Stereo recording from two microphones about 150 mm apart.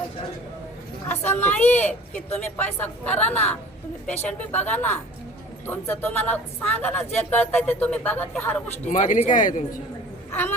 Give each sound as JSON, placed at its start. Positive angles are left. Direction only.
{"t": 1.1, "sound": "a woman's voice", "side_deg": 15}
{"t": 8.8, "sound": "speech", "side_deg": 55}
{"t": 9.3, "sound": "speech", "side_deg": 60}